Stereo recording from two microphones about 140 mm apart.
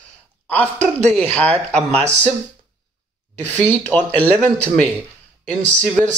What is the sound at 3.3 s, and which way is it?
Speech, 15° left (ahead or behind).